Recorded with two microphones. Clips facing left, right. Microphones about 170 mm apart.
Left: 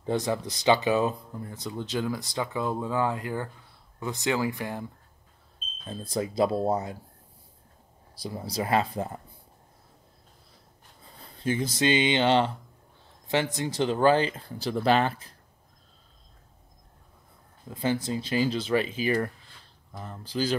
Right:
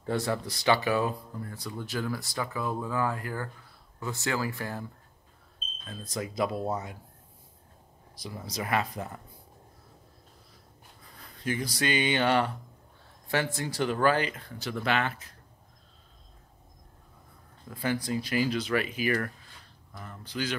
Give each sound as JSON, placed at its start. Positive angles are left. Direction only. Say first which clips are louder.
{"t": 0.0, "sound": "speech", "louder": "left 2 dB", "side_deg": 20}
{"t": 5.9, "sound": "speech", "louder": "left 5 dB", "side_deg": 30}
{"t": 8.2, "sound": "speech", "louder": "left 5 dB", "side_deg": 30}
{"t": 11.0, "sound": "speech", "louder": "left 4 dB", "side_deg": 30}
{"t": 17.6, "sound": "speech", "louder": "left 2 dB", "side_deg": 25}